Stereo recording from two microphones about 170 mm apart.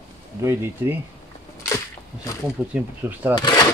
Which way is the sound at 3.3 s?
25° left (ahead or behind).